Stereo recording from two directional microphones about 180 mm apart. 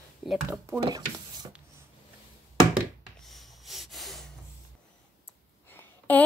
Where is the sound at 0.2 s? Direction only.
30° left (ahead or behind).